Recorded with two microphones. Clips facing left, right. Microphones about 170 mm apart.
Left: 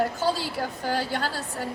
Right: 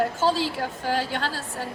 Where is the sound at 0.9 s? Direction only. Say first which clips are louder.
Even; 40° left (ahead or behind).